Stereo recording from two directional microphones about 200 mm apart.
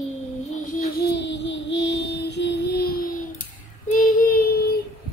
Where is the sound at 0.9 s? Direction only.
60° left (ahead or behind).